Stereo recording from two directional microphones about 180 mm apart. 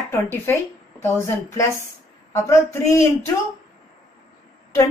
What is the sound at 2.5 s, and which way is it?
Speech, 15° left (ahead or behind).